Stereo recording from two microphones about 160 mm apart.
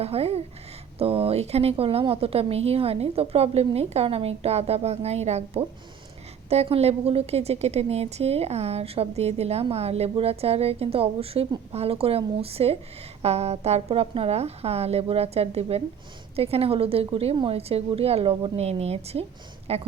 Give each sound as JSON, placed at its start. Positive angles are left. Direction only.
{"t": 0.0, "sound": "a woman's voice", "side_deg": -40}